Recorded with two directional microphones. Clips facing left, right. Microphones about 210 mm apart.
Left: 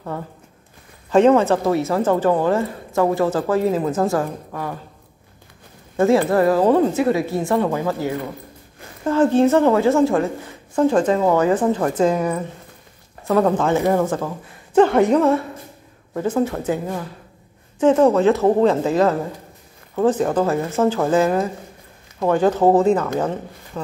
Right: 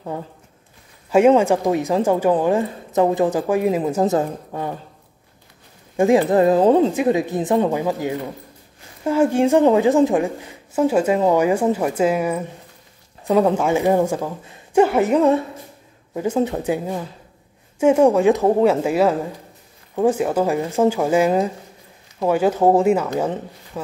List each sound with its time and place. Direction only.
0.1 s speech: 15° right (ahead or behind)
5.9 s speech: 15° right (ahead or behind)